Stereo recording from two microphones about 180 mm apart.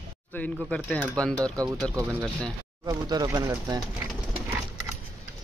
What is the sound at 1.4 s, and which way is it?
Speech, 20° right (ahead or behind).